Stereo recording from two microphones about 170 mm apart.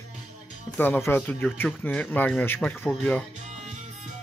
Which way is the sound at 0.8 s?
10° left (ahead or behind).